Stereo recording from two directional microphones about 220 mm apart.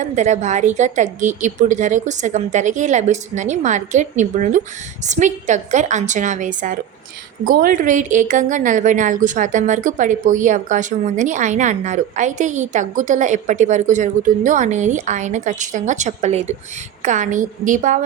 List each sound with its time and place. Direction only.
0.0 s a woman's voice: 35° right (ahead or behind)